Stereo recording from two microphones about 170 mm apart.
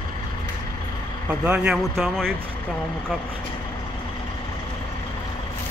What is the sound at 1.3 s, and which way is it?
Speech, 5° right (ahead or behind).